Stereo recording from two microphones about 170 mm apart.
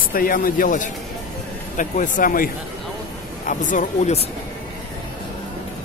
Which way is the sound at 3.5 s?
50° left (ahead or behind).